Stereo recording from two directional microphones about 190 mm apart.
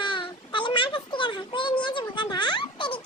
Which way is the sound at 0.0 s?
25° left (ahead or behind).